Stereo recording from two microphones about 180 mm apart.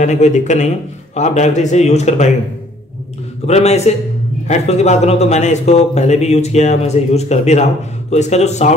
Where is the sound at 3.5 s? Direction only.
35° left (ahead or behind).